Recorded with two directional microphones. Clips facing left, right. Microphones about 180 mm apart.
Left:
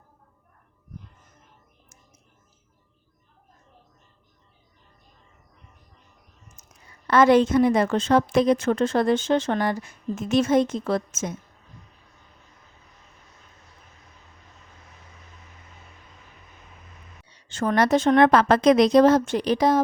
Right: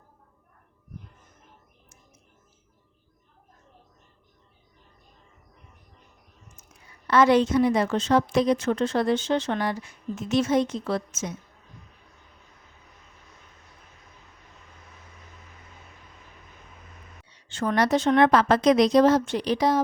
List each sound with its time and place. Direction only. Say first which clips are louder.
6.6 s a sound: even; 40° left (ahead or behind)
7.1 s a woman's voice: left 2 dB; 50° left (ahead or behind)
17.2 s a woman's voice: left 2 dB; 40° left (ahead or behind)